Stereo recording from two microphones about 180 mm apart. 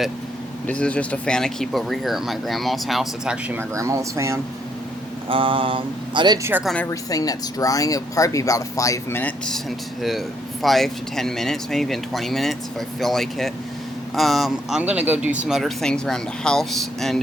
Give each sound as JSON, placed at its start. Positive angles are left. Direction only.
{"t": 0.7, "sound": "speech", "side_deg": 5}
{"t": 3.8, "sound": "speech", "side_deg": -15}
{"t": 5.3, "sound": "mantra", "side_deg": -30}
{"t": 7.1, "sound": "speech", "side_deg": 20}